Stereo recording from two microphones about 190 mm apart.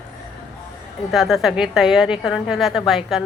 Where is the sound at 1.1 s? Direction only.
Centre (ahead or behind).